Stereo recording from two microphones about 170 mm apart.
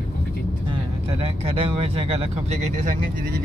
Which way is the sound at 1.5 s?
35° right (ahead or behind).